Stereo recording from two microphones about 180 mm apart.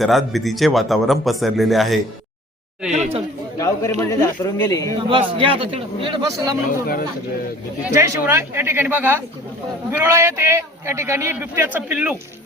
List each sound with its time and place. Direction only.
0.0 s a man's voice: centre (ahead or behind)
2.9 s speech: 40° right (ahead or behind)
3.6 s speech: 15° left (ahead or behind)
4.9 s a man's voice: 30° right (ahead or behind)
6.3 s a man's voice: 20° right (ahead or behind)
6.7 s speech: 50° left (ahead or behind)
7.8 s a man's voice: 10° right (ahead or behind)